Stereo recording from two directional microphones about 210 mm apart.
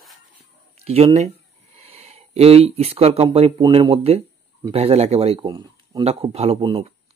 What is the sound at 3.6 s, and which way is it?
Speech, 25° right (ahead or behind).